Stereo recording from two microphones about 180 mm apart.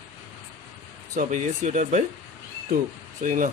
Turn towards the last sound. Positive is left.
turn(degrees=-45)  # may be behind; listen again after turning